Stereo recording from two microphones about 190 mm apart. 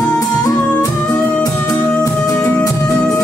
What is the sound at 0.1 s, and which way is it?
Music, 15° left (ahead or behind).